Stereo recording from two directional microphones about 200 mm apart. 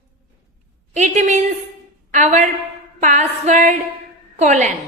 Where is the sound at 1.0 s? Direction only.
35° right (ahead or behind).